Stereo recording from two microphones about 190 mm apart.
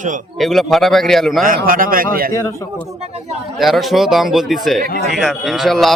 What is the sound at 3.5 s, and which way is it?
A man's voice, centre (ahead or behind).